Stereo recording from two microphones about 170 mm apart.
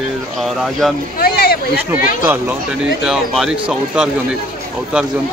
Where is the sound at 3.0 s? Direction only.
5° right (ahead or behind).